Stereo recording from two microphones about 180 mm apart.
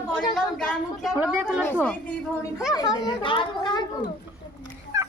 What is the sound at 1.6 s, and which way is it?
A woman's voice, 10° left (ahead or behind).